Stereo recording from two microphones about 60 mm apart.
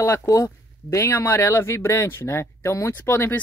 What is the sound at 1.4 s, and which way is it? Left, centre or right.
Speech, left.